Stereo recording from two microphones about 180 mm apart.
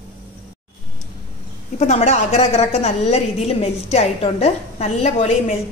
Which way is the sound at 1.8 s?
35° left (ahead or behind).